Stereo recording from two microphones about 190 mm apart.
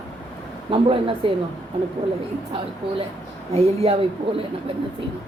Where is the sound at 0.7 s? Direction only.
30° right (ahead or behind).